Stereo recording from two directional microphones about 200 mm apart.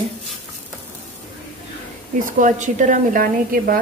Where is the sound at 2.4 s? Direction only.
40° right (ahead or behind).